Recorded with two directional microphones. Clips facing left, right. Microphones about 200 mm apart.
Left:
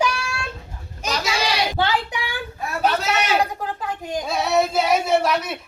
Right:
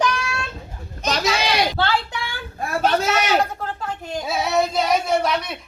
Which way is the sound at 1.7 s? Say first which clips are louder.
Even; 15° left (ahead or behind).